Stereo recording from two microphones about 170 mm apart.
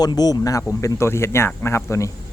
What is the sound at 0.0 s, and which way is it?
Speech, 25° left (ahead or behind).